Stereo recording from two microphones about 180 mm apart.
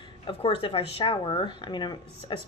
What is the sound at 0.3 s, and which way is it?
Speech, 30° left (ahead or behind).